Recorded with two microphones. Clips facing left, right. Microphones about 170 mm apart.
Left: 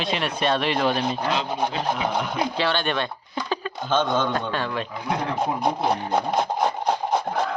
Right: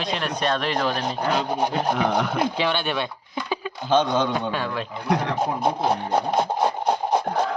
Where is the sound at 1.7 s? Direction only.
50° right (ahead or behind).